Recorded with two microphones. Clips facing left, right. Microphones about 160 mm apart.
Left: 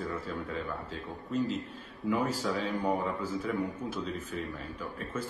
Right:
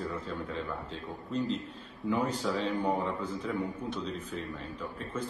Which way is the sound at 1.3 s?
5° left (ahead or behind).